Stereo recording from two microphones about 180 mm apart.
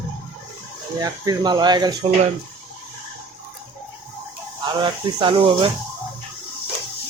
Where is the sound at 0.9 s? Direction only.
20° right (ahead or behind).